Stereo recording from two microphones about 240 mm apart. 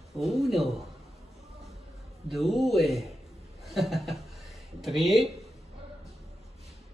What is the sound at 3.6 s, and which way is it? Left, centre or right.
Chuckle, centre.